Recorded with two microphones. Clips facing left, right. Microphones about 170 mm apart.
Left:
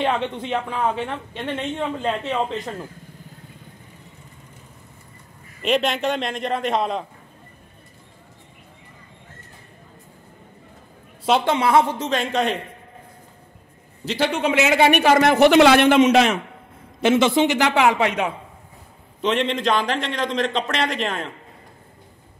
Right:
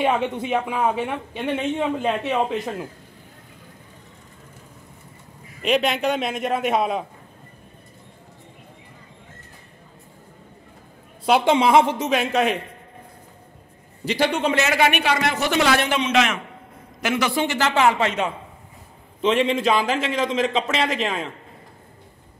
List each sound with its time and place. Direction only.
0.0 s speech: 10° right (ahead or behind)
5.6 s a man's voice: centre (ahead or behind)
11.2 s a man's voice: 5° right (ahead or behind)
11.5 s speech: 15° right (ahead or behind)
14.0 s a man's voice: centre (ahead or behind)
14.9 s speech: 45° left (ahead or behind); by 16.0 s 65° left (ahead or behind)
16.0 s a man's voice: 35° left (ahead or behind)
17.0 s a man's voice: 25° left (ahead or behind)
19.2 s a man's voice: 5° right (ahead or behind)